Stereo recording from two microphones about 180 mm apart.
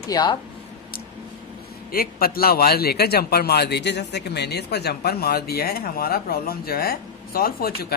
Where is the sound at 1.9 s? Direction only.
55° left (ahead or behind).